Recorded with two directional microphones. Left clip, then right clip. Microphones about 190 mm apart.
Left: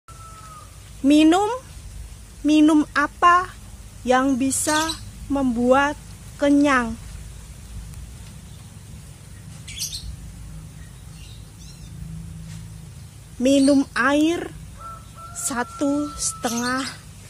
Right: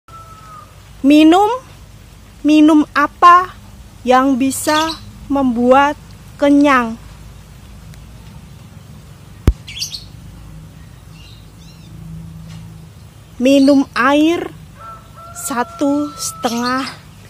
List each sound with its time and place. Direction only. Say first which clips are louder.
1.0 s a woman's voice: right 7 dB; 5° right (ahead or behind)
13.4 s speech: right 6 dB; 5° right (ahead or behind)